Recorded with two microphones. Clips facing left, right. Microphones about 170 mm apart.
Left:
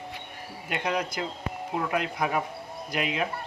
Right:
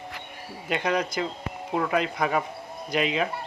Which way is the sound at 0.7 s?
5° left (ahead or behind).